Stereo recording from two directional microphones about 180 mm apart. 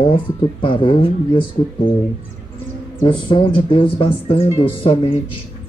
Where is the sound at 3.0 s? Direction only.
25° left (ahead or behind).